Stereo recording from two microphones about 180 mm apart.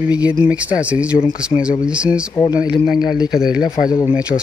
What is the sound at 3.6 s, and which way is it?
Speech, 50° left (ahead or behind).